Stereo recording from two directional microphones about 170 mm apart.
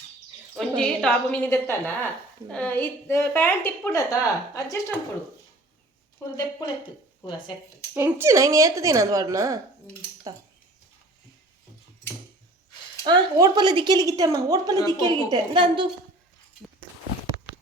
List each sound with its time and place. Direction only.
0.8 s a woman's voice: 5° left (ahead or behind)
6.2 s a woman's voice: 15° left (ahead or behind)
6.6 s speech: 25° left (ahead or behind)
7.9 s a woman's voice: 15° right (ahead or behind)
13.1 s a woman's voice: 25° right (ahead or behind)